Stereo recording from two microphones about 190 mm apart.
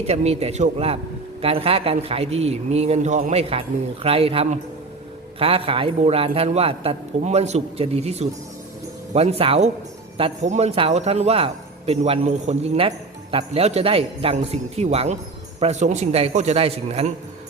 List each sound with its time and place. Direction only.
0.1 s a man's voice: 35° right (ahead or behind)